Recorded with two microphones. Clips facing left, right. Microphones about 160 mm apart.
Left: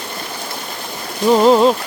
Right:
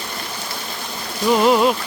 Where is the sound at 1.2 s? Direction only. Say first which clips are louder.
Left 4 dB; 25° left (ahead or behind).